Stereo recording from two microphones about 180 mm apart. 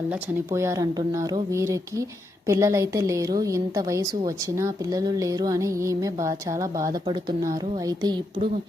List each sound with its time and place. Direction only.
0.1 s a woman's voice: 15° right (ahead or behind)